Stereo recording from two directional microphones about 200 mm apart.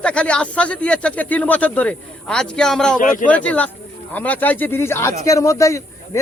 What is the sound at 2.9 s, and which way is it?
Speech, 40° left (ahead or behind).